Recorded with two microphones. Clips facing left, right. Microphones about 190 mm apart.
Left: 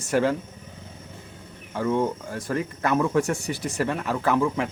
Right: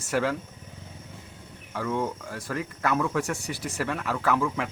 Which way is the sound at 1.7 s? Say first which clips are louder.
Left 5 dB; 20° left (ahead or behind).